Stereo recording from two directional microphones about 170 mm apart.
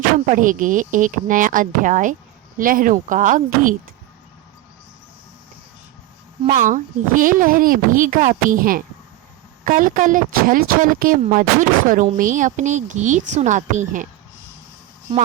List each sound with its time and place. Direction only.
0.3 s speech: 50° right (ahead or behind)
6.5 s speech: 50° right (ahead or behind)